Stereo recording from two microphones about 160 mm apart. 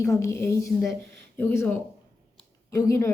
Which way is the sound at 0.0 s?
15° left (ahead or behind).